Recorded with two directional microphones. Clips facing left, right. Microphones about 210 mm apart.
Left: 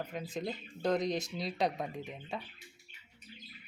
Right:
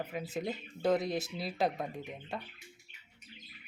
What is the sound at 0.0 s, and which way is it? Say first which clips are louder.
Speech: right 1 dB; 5° right (ahead or behind).